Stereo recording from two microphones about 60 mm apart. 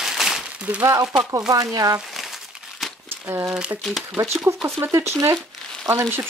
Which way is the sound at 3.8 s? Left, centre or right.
Centre.